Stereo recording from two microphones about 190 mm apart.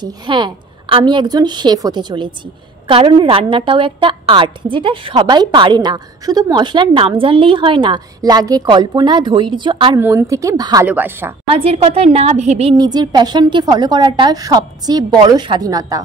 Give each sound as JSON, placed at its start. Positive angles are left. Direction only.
{"t": 0.0, "sound": "a woman's voice", "side_deg": -25}
{"t": 9.9, "sound": "a woman's voice", "side_deg": -15}
{"t": 11.4, "sound": "a woman's voice", "side_deg": -30}